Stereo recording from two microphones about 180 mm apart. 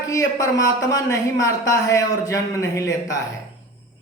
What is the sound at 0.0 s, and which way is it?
A man's voice, 20° left (ahead or behind).